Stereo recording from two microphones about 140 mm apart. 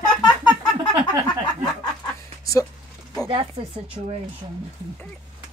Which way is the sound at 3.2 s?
40° right (ahead or behind).